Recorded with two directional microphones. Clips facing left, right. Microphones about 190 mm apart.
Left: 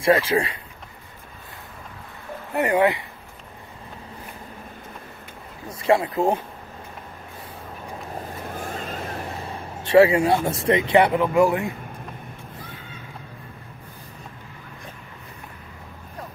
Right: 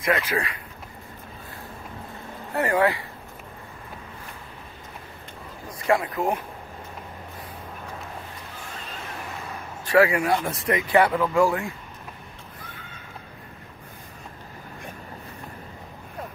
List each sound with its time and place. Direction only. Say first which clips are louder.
0.0 s speech: left 6 dB; 30° left (ahead or behind)
2.5 s speech: left 2 dB; 20° left (ahead or behind)
5.7 s speech: left 3 dB; 25° left (ahead or behind)
8.5 s vehicle: left 8 dB; 50° left (ahead or behind)
9.5 s speech: left 4 dB; 25° left (ahead or behind)
12.5 s a sound: left 4 dB; 25° left (ahead or behind)